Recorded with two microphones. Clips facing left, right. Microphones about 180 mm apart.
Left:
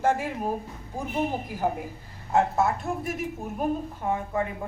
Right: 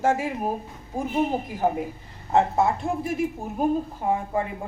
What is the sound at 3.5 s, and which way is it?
Speech, 30° right (ahead or behind).